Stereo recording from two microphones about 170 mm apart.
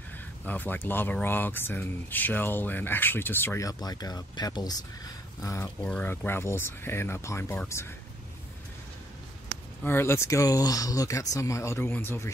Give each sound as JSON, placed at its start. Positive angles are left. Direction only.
{"t": 0.5, "sound": "speech", "side_deg": 10}
{"t": 5.8, "sound": "speech", "side_deg": 5}
{"t": 9.8, "sound": "speech", "side_deg": 15}